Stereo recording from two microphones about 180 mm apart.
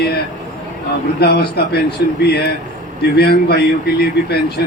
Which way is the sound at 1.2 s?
65° left (ahead or behind).